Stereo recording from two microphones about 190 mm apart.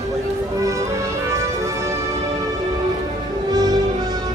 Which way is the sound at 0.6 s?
15° right (ahead or behind).